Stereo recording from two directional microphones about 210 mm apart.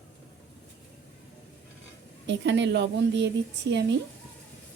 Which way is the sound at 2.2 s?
55° right (ahead or behind).